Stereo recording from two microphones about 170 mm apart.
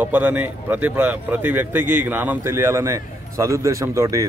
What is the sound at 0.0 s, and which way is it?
Speech, 10° right (ahead or behind).